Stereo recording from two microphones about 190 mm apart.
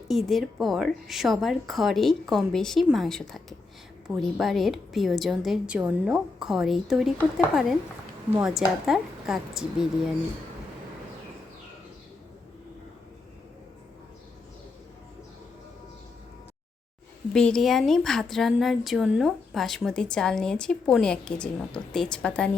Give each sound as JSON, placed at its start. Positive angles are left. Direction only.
{"t": 0.1, "sound": "speech", "side_deg": 0}
{"t": 17.3, "sound": "speech", "side_deg": 5}